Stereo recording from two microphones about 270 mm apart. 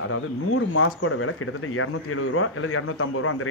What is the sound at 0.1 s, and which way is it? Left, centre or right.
Speech, left.